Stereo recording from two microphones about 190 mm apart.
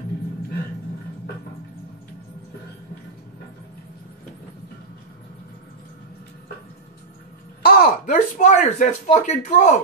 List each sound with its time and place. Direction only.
7.6 s speech: 45° left (ahead or behind)